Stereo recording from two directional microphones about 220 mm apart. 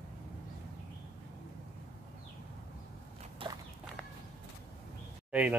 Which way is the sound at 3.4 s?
25° right (ahead or behind).